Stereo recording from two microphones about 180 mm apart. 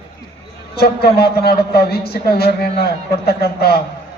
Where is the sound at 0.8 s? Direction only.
60° left (ahead or behind).